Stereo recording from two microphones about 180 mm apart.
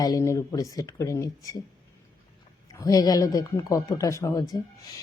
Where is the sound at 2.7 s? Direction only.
20° left (ahead or behind).